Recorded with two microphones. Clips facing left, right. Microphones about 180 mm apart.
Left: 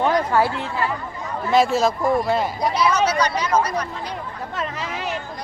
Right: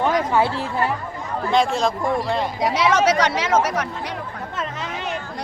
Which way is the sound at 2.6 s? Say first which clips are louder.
Right 1 dB; 90° right.